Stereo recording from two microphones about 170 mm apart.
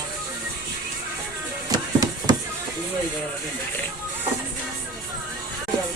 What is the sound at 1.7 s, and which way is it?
Music, 25° right (ahead or behind).